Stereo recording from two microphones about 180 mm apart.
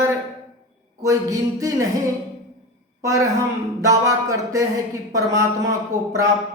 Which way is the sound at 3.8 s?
20° right (ahead or behind).